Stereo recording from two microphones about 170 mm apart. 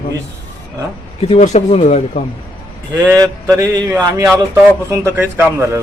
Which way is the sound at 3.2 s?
15° right (ahead or behind).